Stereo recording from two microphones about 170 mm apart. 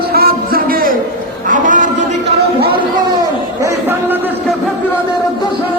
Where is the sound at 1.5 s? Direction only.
50° right (ahead or behind).